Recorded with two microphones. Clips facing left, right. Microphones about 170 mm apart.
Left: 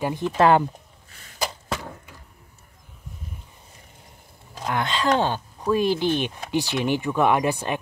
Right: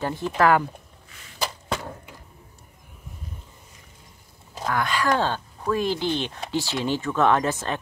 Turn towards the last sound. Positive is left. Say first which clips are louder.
# left 1 dB
turn(degrees=15)  # may be behind; listen again after turning